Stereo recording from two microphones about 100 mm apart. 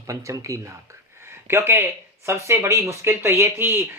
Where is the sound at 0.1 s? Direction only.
30° right (ahead or behind).